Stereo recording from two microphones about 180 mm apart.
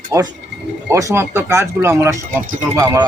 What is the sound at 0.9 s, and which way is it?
Speech, 15° right (ahead or behind).